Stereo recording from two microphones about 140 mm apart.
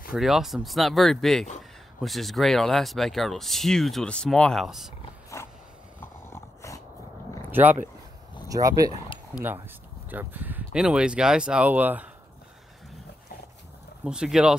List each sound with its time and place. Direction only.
0.1 s speech: centre (ahead or behind)
5.3 s mechanisms: 20° left (ahead or behind)
5.9 s dog: 20° left (ahead or behind)
7.5 s speech: 15° right (ahead or behind)
8.5 s speech: 25° right (ahead or behind)
9.3 s speech: 15° right (ahead or behind)
14.0 s speech: 5° right (ahead or behind)